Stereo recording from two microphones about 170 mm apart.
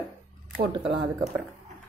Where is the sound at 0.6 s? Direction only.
30° right (ahead or behind).